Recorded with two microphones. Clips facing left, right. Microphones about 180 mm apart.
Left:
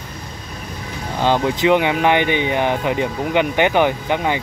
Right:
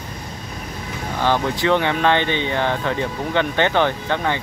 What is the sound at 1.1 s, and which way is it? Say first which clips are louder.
Speech: left 3 dB; 15° left (ahead or behind).